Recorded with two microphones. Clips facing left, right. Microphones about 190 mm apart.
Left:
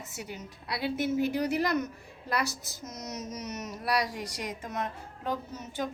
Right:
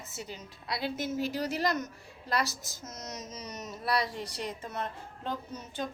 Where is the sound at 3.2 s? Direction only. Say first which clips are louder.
Left 4 dB; 10° left (ahead or behind).